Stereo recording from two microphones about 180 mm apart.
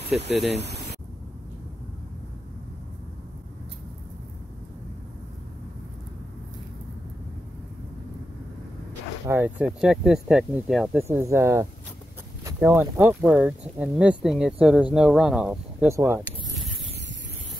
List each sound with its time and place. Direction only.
0.1 s speech: 5° right (ahead or behind)
0.5 s speech: 70° right (ahead or behind)
9.3 s speech: 10° right (ahead or behind)
11.0 s speech: 15° right (ahead or behind)
16.0 s zipper: 5° right (ahead or behind)